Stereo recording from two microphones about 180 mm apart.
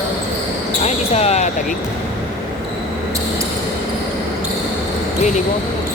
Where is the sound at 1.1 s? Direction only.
35° left (ahead or behind).